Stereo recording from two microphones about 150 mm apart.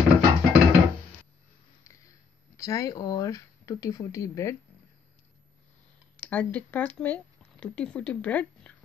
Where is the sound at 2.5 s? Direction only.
20° left (ahead or behind).